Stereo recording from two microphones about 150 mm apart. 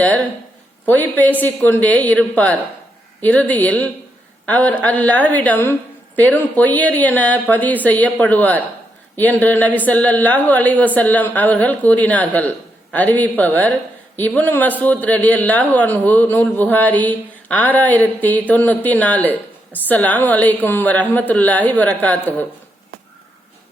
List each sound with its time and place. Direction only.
0.9 s a man's voice: 10° left (ahead or behind)